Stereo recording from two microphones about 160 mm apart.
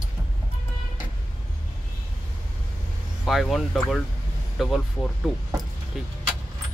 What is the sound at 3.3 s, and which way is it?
Speech, centre (ahead or behind).